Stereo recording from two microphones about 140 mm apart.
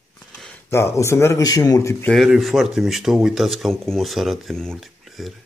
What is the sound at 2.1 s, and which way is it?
Speech, centre (ahead or behind).